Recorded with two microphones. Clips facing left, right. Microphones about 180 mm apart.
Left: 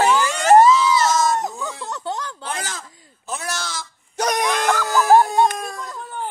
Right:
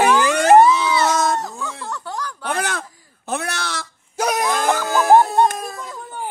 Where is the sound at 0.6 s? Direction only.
60° right (ahead or behind).